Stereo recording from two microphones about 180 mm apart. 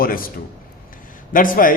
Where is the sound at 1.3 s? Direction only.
50° left (ahead or behind).